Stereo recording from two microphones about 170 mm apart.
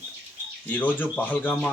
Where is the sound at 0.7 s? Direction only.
10° left (ahead or behind).